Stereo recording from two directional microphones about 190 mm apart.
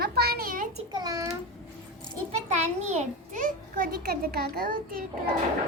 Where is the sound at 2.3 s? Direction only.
35° right (ahead or behind).